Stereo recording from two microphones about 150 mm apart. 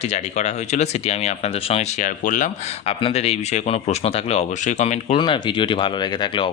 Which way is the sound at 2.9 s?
40° left (ahead or behind).